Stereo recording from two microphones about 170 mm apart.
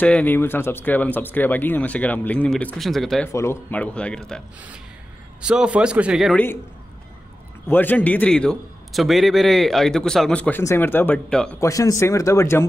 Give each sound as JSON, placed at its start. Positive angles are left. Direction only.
{"t": 0.0, "sound": "speech", "side_deg": 10}
{"t": 3.3, "sound": "speech", "side_deg": 15}
{"t": 5.4, "sound": "a man's voice", "side_deg": -5}
{"t": 6.3, "sound": "speech", "side_deg": 10}
{"t": 7.6, "sound": "a man's voice", "side_deg": 10}
{"t": 11.6, "sound": "speech", "side_deg": 20}